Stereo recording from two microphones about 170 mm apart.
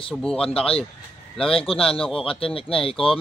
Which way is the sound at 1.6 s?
35° left (ahead or behind).